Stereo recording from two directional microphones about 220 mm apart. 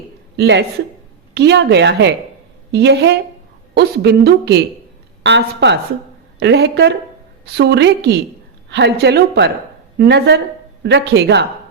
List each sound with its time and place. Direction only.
0.3 s a woman's voice: 50° right (ahead or behind)